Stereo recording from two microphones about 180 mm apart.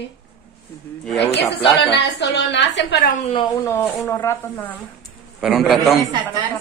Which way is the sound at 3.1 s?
35° left (ahead or behind).